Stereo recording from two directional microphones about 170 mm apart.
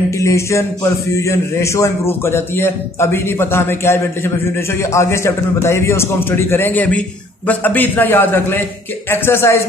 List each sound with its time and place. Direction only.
0.2 s a man's voice: 15° left (ahead or behind)